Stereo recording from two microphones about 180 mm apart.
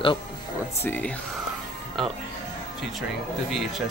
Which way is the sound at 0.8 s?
10° left (ahead or behind).